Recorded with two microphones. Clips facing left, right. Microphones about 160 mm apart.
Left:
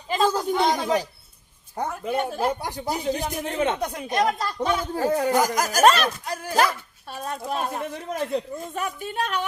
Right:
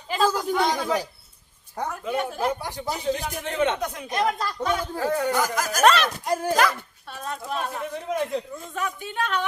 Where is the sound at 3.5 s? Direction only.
35° left (ahead or behind).